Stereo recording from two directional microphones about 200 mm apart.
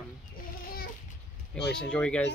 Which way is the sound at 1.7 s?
5° left (ahead or behind).